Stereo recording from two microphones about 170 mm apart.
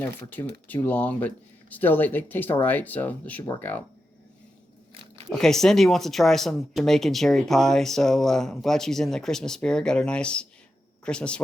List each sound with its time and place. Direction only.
0.0 s speech: 10° left (ahead or behind)
3.4 s speech: 20° left (ahead or behind)
5.3 s speech: 5° left (ahead or behind)